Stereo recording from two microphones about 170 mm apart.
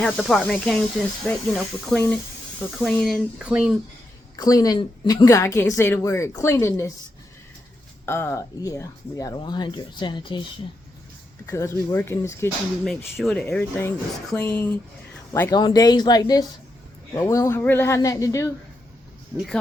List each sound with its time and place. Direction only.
0.0 s speech: centre (ahead or behind)
4.4 s a woman's voice: 20° left (ahead or behind)
8.0 s a woman's voice: 15° left (ahead or behind)
11.4 s speech: 20° left (ahead or behind)
13.1 s a woman's voice: 5° left (ahead or behind)